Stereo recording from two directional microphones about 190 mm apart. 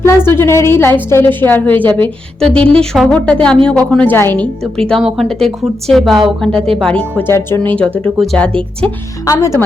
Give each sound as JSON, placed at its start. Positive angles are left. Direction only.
{"t": 0.3, "sound": "a woman's voice", "side_deg": 10}